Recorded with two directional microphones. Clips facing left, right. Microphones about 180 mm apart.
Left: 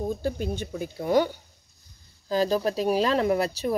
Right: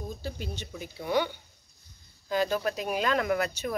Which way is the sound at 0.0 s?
50° left (ahead or behind).